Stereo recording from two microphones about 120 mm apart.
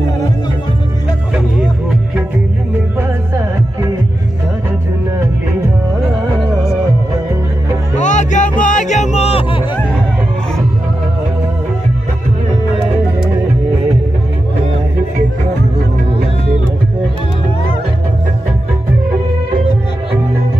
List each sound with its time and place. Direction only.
3.0 s music: 25° right (ahead or behind)
8.0 s music: 90° left; by 9.6 s 55° left (ahead or behind)